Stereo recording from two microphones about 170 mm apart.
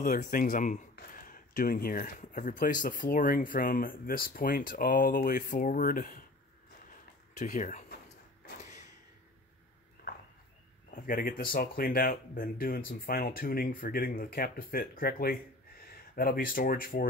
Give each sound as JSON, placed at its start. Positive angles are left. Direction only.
{"t": 0.0, "sound": "speech", "side_deg": 50}
{"t": 7.3, "sound": "speech", "side_deg": 45}
{"t": 10.0, "sound": "a sound", "side_deg": 60}
{"t": 10.9, "sound": "speech", "side_deg": 55}